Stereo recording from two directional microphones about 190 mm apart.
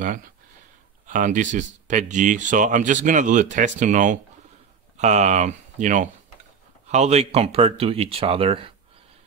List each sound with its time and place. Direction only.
1.0 s speech: 45° right (ahead or behind)